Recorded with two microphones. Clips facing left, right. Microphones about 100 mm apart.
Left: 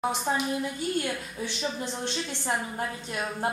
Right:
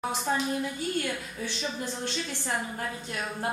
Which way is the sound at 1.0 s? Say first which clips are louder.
Left 1 dB; 20° left (ahead or behind).